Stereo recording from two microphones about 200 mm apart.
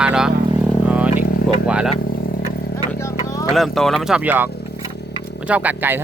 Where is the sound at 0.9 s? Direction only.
5° right (ahead or behind).